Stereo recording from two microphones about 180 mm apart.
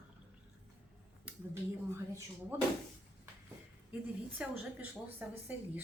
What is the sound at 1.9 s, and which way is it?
Dishes, 15° right (ahead or behind).